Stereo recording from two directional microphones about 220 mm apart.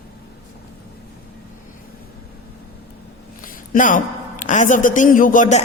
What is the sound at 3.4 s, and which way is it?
A woman's voice, 40° left (ahead or behind).